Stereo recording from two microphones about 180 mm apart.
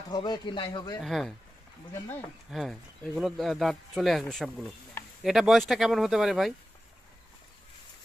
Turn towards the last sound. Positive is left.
turn(degrees=0)  # may be behind; listen again after turning